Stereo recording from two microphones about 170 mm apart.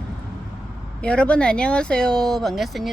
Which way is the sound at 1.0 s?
5° left (ahead or behind).